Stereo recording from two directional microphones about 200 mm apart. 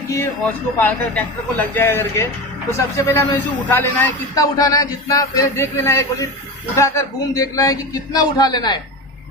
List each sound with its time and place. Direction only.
0.1 s a man's voice: 10° left (ahead or behind)